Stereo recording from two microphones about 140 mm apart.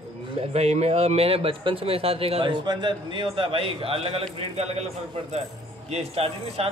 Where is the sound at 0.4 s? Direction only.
50° right (ahead or behind).